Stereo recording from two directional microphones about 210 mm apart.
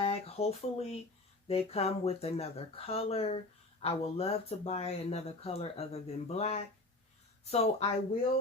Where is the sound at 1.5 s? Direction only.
30° left (ahead or behind).